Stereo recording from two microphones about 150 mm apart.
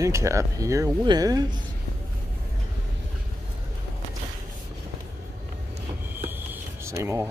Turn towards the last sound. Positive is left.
turn(degrees=-20)  # may be behind; listen again after turning